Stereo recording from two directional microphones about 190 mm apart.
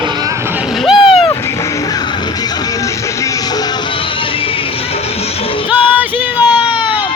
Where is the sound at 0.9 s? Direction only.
30° left (ahead or behind).